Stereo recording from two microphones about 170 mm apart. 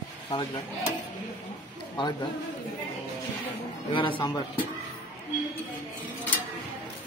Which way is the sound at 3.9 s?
30° left (ahead or behind).